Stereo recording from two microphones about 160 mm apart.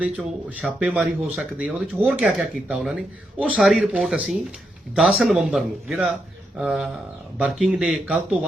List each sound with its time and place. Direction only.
0.0 s speech: 5° right (ahead or behind)